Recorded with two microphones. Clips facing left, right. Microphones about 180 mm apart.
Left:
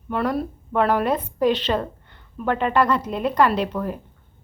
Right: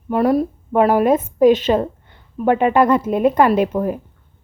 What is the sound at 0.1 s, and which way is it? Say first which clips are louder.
A woman's voice: right 7 dB; 40° right (ahead or behind).